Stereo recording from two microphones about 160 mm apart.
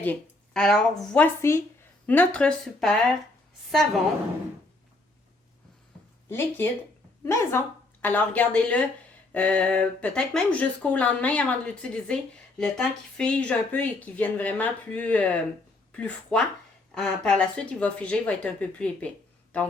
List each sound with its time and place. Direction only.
0.0 s a woman's voice: 10° left (ahead or behind)
7.3 s speech: 15° left (ahead or behind)